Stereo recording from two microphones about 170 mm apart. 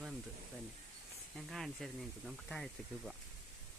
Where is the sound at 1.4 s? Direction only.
Centre (ahead or behind).